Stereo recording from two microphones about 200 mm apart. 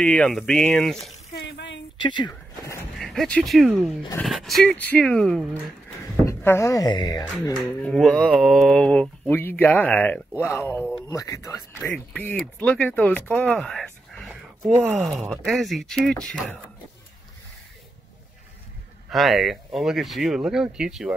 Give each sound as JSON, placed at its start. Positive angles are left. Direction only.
{"t": 0.0, "sound": "speech", "side_deg": 5}
{"t": 1.3, "sound": "a sound", "side_deg": 60}
{"t": 2.0, "sound": "speech", "side_deg": 20}
{"t": 3.0, "sound": "speech", "side_deg": 0}
{"t": 6.2, "sound": "speech", "side_deg": 15}
{"t": 7.5, "sound": "speech", "side_deg": 0}
{"t": 19.0, "sound": "speech", "side_deg": 0}